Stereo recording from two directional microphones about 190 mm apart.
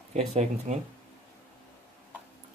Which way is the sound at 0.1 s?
35° right (ahead or behind).